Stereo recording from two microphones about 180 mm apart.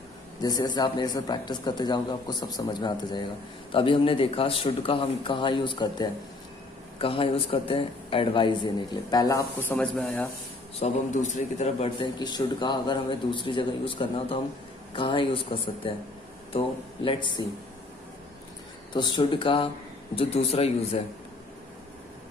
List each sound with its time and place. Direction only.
0.4 s a man's voice: 20° left (ahead or behind)
9.6 s speech: 10° left (ahead or behind)
10.8 s a man's voice: 40° left (ahead or behind)
12.0 s a man's voice: 25° left (ahead or behind)
18.9 s a man's voice: 25° left (ahead or behind)